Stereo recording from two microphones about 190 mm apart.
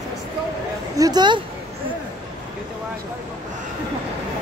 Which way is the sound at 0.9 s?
20° right (ahead or behind).